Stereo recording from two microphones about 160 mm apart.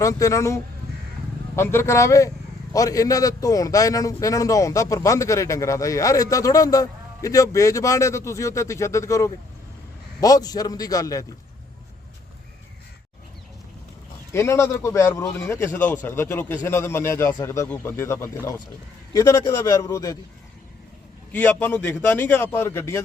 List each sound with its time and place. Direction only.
0.0 s a man's voice: 20° left (ahead or behind)
14.3 s a man's voice: 15° left (ahead or behind)
21.3 s a man's voice: 10° left (ahead or behind)